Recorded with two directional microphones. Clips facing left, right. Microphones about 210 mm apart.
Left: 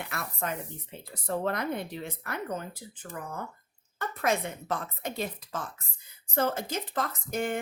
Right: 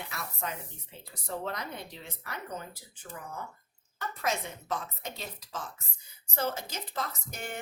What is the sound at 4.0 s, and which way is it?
Speech, 55° left (ahead or behind).